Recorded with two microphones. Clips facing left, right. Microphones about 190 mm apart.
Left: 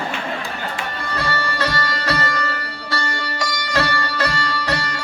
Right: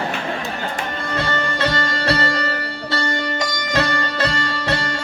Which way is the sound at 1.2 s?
20° right (ahead or behind).